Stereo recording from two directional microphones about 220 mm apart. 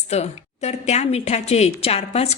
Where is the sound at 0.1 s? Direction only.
30° left (ahead or behind).